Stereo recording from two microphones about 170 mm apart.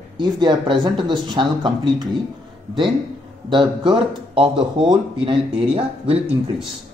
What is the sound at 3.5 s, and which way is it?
Speech, 30° right (ahead or behind).